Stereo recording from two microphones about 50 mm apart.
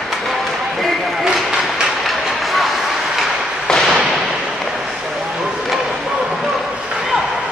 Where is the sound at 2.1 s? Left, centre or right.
Centre.